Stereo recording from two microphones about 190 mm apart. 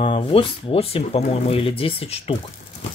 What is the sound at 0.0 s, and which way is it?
Speech, 30° left (ahead or behind).